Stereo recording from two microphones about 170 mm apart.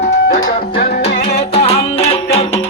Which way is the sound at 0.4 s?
60° left (ahead or behind).